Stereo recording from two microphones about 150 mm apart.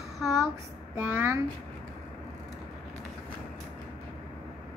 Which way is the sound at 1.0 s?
10° right (ahead or behind).